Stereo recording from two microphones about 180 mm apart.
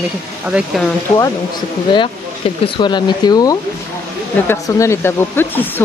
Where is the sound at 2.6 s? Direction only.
25° left (ahead or behind).